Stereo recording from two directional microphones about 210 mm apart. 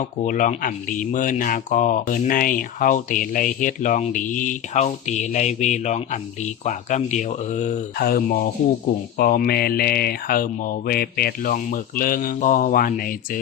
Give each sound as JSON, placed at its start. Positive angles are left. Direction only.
{"t": 0.3, "sound": "speech", "side_deg": 40}